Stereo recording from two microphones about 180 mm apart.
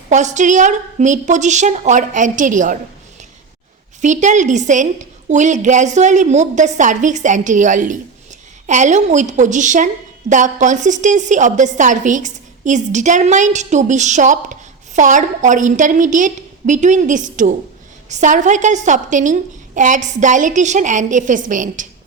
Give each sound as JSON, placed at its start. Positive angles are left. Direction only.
{"t": 0.1, "sound": "a woman's voice", "side_deg": -40}
{"t": 4.0, "sound": "a woman's voice", "side_deg": -40}